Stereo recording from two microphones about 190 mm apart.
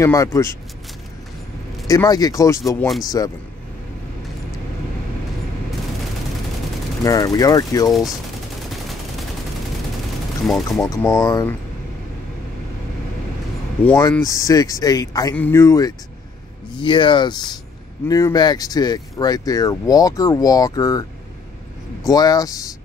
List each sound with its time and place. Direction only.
0.0 s speech: 15° left (ahead or behind)
1.9 s speech: 20° left (ahead or behind)
7.0 s speech: 20° left (ahead or behind)
10.4 s speech: centre (ahead or behind)
10.8 s speech: 15° left (ahead or behind)
14.2 s speech: 15° left (ahead or behind)
16.8 s speech: 25° left (ahead or behind)
22.0 s speech: 20° left (ahead or behind)